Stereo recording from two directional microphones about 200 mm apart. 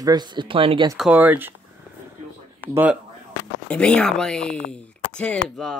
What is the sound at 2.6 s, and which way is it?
Speech, 10° right (ahead or behind).